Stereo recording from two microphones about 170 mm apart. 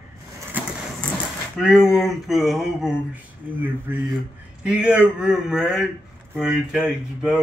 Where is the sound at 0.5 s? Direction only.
10° right (ahead or behind).